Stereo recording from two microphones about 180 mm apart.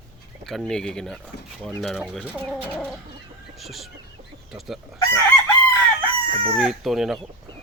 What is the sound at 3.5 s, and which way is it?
Chicken, centre (ahead or behind).